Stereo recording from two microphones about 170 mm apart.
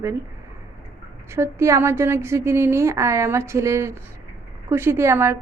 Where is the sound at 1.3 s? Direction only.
15° right (ahead or behind).